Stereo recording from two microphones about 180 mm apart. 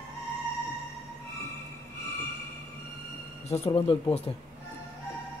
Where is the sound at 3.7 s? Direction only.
30° left (ahead or behind).